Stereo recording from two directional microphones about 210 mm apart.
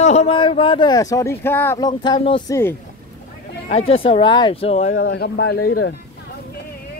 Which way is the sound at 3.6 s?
30° left (ahead or behind).